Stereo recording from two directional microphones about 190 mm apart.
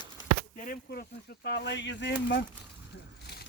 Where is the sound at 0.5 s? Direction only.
45° left (ahead or behind); by 2.1 s 70° left (ahead or behind).